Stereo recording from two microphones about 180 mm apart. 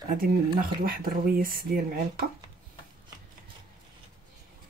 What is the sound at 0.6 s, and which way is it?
Speech, 55° right (ahead or behind).